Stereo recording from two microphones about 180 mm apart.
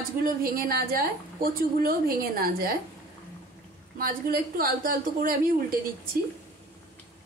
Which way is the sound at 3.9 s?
55° right (ahead or behind).